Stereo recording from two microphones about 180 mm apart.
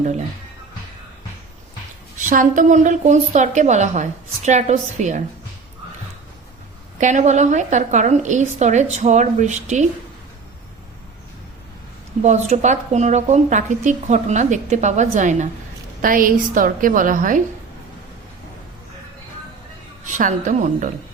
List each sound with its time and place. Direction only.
2.1 s a woman's voice: 45° right (ahead or behind)
7.0 s speech: 40° right (ahead or behind)
12.2 s a woman's voice: 40° right (ahead or behind)
20.1 s a woman's voice: 45° right (ahead or behind)